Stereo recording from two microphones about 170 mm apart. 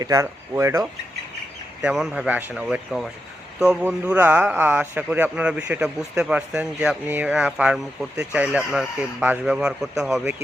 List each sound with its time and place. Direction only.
0.0 s speech: 20° right (ahead or behind)
1.8 s speech: 5° right (ahead or behind)